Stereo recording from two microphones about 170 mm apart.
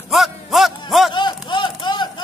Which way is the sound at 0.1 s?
Centre (ahead or behind).